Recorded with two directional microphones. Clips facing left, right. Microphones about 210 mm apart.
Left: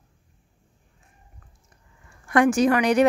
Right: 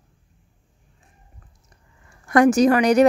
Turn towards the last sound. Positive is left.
turn(degrees=-40)  # may be behind; listen again after turning